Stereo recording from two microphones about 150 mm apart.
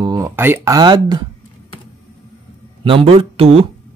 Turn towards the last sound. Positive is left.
turn(degrees=-40)  # may be behind; listen again after turning